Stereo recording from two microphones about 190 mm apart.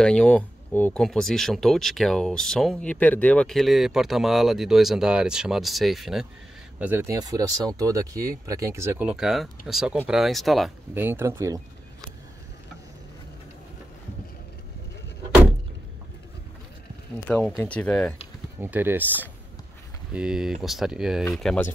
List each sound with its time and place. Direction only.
0.0 s speech: 5° left (ahead or behind)
6.8 s speech: 10° right (ahead or behind)
11.0 s speech: 10° right (ahead or behind)
17.4 s speech: 5° left (ahead or behind)
18.6 s speech: 10° right (ahead or behind)